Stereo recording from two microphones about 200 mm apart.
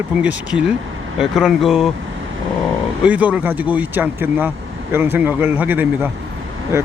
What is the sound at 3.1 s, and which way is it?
Speech, 5° right (ahead or behind).